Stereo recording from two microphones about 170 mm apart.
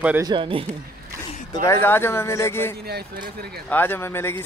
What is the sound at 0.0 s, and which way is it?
Speech, 10° right (ahead or behind).